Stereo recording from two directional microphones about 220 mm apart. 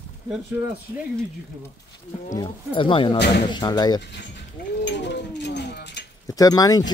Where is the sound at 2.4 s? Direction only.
25° left (ahead or behind).